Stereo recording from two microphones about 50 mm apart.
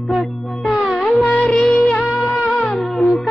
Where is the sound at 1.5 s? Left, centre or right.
Left.